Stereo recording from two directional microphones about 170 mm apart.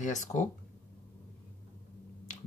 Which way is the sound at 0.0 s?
45° left (ahead or behind).